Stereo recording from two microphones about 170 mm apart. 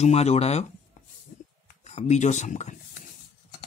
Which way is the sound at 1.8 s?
40° left (ahead or behind).